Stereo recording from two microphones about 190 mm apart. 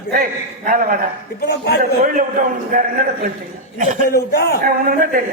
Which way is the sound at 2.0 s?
45° right (ahead or behind).